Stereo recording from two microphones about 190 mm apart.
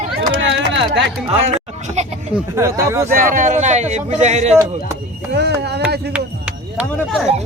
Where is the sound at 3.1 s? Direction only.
45° right (ahead or behind).